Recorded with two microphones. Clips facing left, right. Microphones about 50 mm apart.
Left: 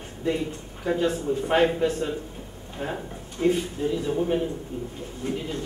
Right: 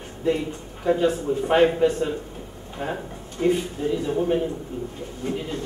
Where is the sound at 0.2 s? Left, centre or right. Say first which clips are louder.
Right 3 dB; centre.